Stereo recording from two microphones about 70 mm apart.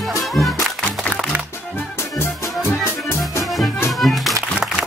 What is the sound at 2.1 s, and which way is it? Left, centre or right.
Music, left.